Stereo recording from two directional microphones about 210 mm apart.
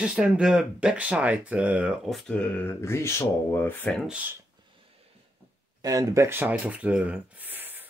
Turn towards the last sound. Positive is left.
turn(degrees=-10)  # may be behind; listen again after turning